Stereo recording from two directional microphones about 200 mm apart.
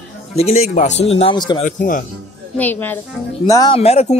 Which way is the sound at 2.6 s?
10° left (ahead or behind).